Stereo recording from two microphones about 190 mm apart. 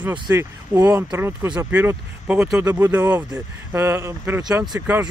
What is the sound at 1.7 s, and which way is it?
Speech, 10° right (ahead or behind).